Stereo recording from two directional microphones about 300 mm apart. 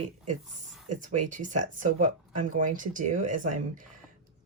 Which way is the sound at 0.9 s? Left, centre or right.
Right.